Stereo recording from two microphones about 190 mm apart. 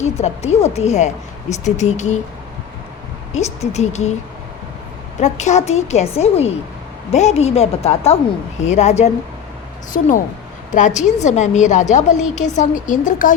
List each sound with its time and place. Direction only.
0.0 s a woman's voice: 35° left (ahead or behind)
3.3 s a woman's voice: 35° left (ahead or behind)
5.2 s a woman's voice: 40° left (ahead or behind)
10.7 s a woman's voice: 40° left (ahead or behind)